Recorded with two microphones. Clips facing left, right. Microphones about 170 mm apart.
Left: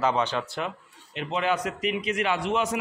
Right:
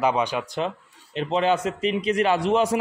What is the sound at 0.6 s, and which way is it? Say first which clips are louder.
A man's voice: right 5 dB; 30° right (ahead or behind).